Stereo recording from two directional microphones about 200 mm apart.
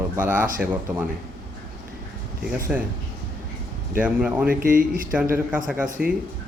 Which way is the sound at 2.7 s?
5° right (ahead or behind).